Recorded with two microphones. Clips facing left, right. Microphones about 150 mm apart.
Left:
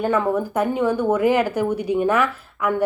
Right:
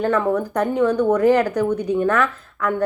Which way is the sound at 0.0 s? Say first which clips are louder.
Right 1 dB; 5° left (ahead or behind).